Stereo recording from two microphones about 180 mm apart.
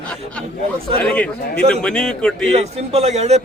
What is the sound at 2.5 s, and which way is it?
Speech, 35° right (ahead or behind).